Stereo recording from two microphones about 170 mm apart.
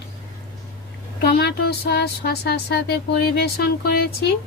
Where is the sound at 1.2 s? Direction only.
75° left (ahead or behind).